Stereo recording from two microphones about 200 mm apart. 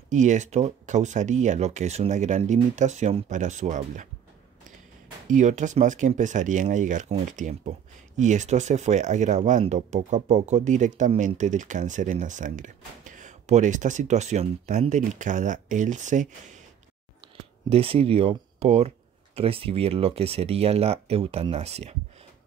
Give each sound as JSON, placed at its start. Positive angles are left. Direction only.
{"t": 0.1, "sound": "speech", "side_deg": -35}
{"t": 5.3, "sound": "speech", "side_deg": -35}
{"t": 17.2, "sound": "a sound", "side_deg": -30}
{"t": 19.3, "sound": "speech", "side_deg": -30}